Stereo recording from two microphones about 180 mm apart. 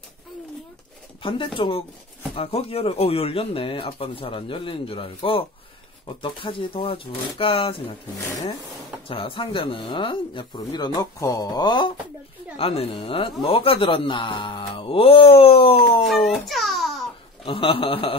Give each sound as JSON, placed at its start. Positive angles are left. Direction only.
{"t": 1.2, "sound": "speech", "side_deg": 25}
{"t": 9.0, "sound": "speech", "side_deg": 30}
{"t": 16.3, "sound": "babbling", "side_deg": 0}
{"t": 17.5, "sound": "speech", "side_deg": 30}